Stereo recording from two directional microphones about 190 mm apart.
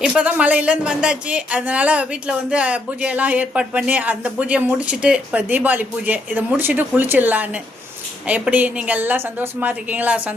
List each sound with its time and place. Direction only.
0.0 s speech: 5° right (ahead or behind)